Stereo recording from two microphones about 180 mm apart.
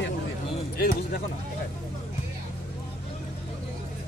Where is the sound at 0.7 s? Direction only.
55° left (ahead or behind).